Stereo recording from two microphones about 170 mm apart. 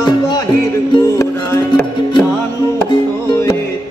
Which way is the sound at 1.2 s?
15° left (ahead or behind).